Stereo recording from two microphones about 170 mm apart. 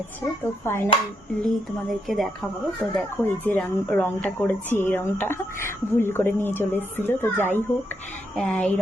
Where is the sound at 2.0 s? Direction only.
Centre (ahead or behind).